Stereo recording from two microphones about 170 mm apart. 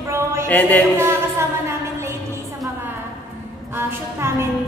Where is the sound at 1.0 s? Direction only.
15° right (ahead or behind).